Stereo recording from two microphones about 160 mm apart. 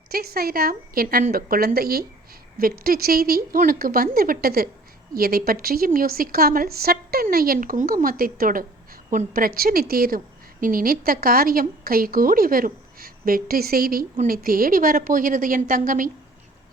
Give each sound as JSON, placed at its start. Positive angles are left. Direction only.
{"t": 0.1, "sound": "a woman's voice", "side_deg": -75}